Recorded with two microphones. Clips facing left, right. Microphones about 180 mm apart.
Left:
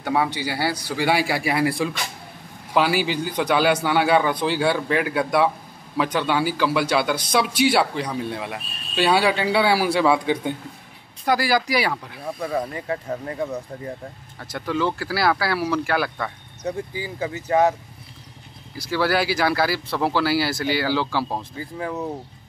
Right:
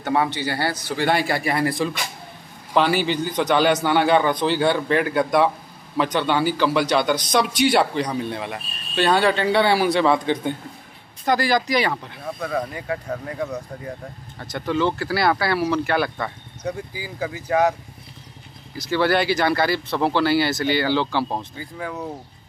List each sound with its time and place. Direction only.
0.0 s a man's voice: 5° left (ahead or behind)
14.5 s a man's voice: 5° left (ahead or behind)
16.9 s speech: 25° left (ahead or behind)
18.9 s a man's voice: 5° left (ahead or behind)
21.5 s speech: 30° left (ahead or behind)